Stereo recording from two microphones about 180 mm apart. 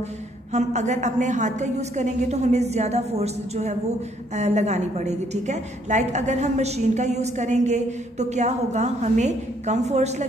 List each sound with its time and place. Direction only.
0.5 s a woman's voice: 40° right (ahead or behind)